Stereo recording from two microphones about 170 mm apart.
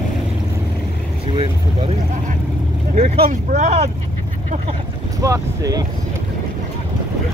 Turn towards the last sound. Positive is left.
turn(degrees=-20)  # may be behind; listen again after turning